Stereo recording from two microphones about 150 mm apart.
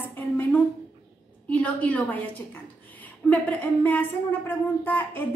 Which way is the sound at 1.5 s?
10° left (ahead or behind).